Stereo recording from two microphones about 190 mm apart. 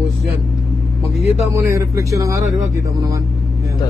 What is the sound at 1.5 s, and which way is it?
Speech, 15° right (ahead or behind).